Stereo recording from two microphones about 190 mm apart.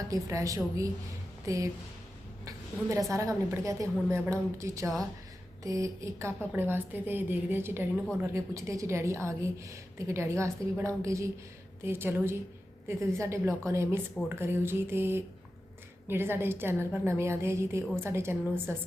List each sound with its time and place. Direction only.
0.1 s a woman's voice: 15° right (ahead or behind)
2.9 s a woman's voice: 15° right (ahead or behind)